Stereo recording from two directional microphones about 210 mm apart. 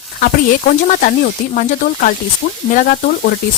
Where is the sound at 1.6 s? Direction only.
40° left (ahead or behind).